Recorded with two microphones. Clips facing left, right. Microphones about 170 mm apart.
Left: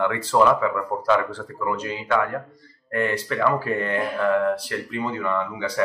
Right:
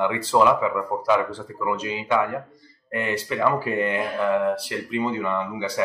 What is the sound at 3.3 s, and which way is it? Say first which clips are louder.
Speech: right 2 dB; 15° right (ahead or behind).